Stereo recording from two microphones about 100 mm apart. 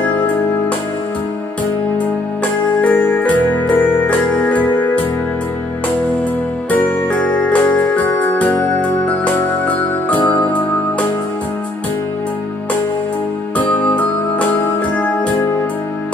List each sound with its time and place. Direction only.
0.0 s music: 20° left (ahead or behind)
2.8 s music: 20° left (ahead or behind)
6.7 s music: 15° left (ahead or behind)
10.0 s music: 15° left (ahead or behind)
13.6 s music: 15° left (ahead or behind)